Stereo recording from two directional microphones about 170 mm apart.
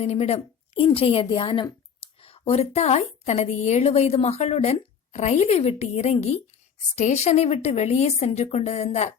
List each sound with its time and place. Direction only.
0.0 s a woman's voice: 35° left (ahead or behind)